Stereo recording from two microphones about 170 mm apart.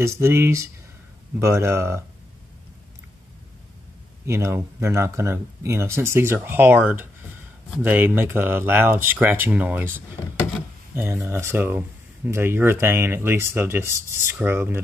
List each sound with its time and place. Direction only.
0.0 s speech: 15° right (ahead or behind)
4.3 s speech: 15° right (ahead or behind)
11.2 s speech: 15° right (ahead or behind)